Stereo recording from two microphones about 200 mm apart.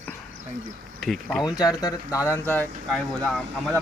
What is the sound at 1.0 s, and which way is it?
Speech, centre (ahead or behind).